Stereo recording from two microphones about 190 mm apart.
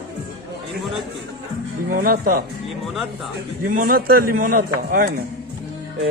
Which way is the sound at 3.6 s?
50° right (ahead or behind).